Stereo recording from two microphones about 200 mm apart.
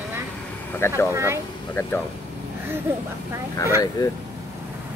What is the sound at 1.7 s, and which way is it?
Speech, 10° left (ahead or behind).